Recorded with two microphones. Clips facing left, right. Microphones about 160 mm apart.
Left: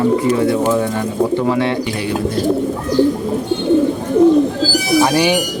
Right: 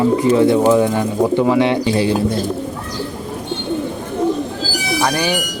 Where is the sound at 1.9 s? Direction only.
30° right (ahead or behind).